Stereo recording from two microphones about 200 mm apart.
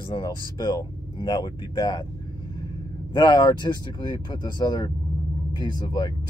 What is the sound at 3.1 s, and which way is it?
Speech, 20° left (ahead or behind).